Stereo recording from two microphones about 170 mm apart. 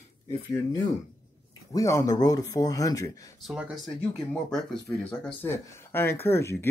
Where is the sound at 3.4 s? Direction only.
Centre (ahead or behind); by 6.7 s 15° left (ahead or behind).